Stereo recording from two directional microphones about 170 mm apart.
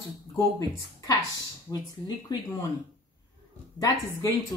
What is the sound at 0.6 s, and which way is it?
A woman's voice, 20° left (ahead or behind).